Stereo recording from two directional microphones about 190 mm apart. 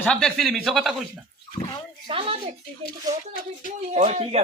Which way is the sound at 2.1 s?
30° right (ahead or behind).